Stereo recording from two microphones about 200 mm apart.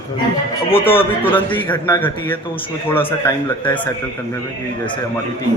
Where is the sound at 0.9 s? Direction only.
10° left (ahead or behind).